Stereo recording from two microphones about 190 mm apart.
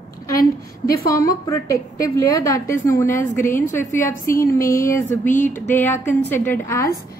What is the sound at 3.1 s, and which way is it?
Speech, 45° left (ahead or behind).